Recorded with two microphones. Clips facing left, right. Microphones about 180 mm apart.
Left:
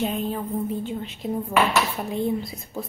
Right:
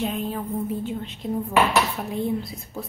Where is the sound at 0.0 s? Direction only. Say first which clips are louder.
Left 1 dB; centre (ahead or behind).